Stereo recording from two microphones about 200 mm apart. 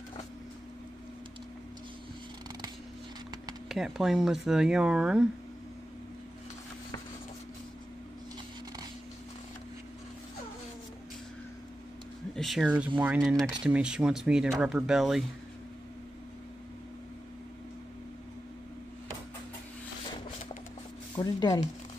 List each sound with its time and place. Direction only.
3.6 s speech: centre (ahead or behind)
12.4 s speech: centre (ahead or behind)
21.2 s speech: 15° left (ahead or behind)